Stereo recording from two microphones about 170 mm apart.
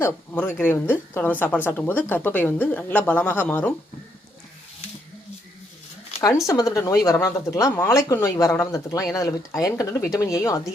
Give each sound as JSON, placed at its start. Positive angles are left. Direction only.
{"t": 0.0, "sound": "a woman's voice", "side_deg": 15}
{"t": 6.1, "sound": "a sound", "side_deg": 35}
{"t": 6.5, "sound": "speech", "side_deg": 20}